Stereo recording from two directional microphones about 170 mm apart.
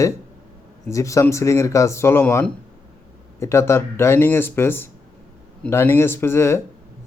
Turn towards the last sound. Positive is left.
turn(degrees=15)  # may be behind; listen again after turning